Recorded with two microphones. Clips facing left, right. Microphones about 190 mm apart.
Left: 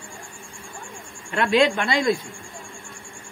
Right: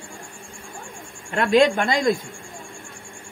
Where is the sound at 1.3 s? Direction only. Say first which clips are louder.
Right 2 dB; 40° right (ahead or behind).